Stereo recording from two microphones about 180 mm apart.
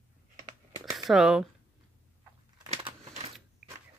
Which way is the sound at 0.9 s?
Centre (ahead or behind).